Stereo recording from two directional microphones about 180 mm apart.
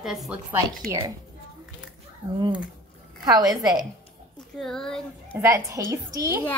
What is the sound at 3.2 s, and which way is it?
Speech, 20° right (ahead or behind).